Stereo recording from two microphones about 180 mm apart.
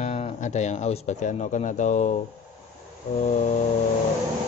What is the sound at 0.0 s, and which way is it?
Speech, 40° left (ahead or behind).